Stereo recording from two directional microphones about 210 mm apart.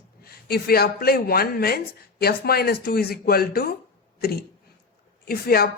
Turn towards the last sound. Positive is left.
turn(degrees=45)  # may be behind; listen again after turning